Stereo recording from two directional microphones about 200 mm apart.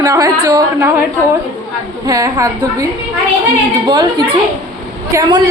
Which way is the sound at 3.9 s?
20° right (ahead or behind).